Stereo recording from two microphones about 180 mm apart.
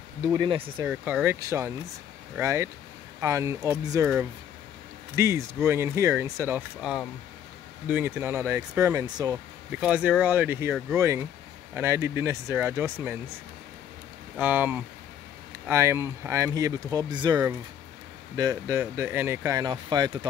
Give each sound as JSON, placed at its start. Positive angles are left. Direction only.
{"t": 0.2, "sound": "speech", "side_deg": -15}
{"t": 5.1, "sound": "speech", "side_deg": -15}
{"t": 9.7, "sound": "speech", "side_deg": -5}
{"t": 14.4, "sound": "speech", "side_deg": -10}